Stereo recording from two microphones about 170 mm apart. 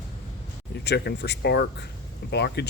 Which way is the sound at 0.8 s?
75° left (ahead or behind).